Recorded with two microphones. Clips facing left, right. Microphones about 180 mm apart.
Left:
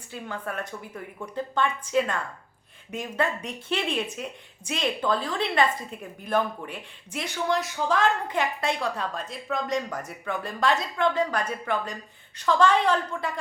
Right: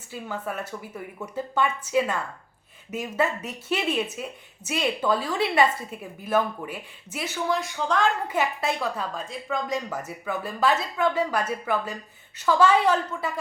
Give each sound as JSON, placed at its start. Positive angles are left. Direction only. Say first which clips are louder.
{"t": 0.1, "sound": "a woman's voice", "louder": "right 2 dB", "side_deg": -5}